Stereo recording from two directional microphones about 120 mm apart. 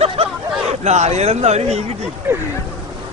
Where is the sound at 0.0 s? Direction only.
55° right (ahead or behind).